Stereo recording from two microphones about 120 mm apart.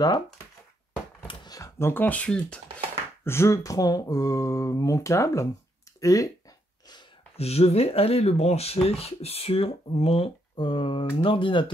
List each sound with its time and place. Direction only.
1.2 s a sound: 35° left (ahead or behind); by 2.6 s 10° left (ahead or behind)
3.3 s speech: 25° left (ahead or behind)
7.3 s speech: 60° left (ahead or behind); by 11.7 s 45° left (ahead or behind)